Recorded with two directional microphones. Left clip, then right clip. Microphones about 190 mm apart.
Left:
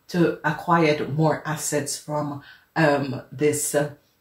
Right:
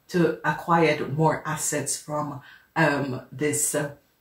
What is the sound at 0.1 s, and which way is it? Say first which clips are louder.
Speech: left 1 dB; 35° left (ahead or behind).